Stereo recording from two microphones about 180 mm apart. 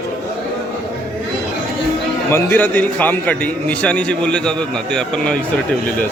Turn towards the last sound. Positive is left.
turn(degrees=5)  # may be behind; listen again after turning